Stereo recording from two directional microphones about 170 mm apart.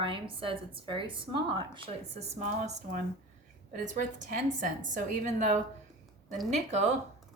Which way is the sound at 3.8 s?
50° right (ahead or behind).